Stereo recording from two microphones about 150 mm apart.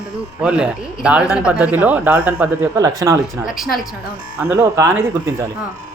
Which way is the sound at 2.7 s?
25° right (ahead or behind).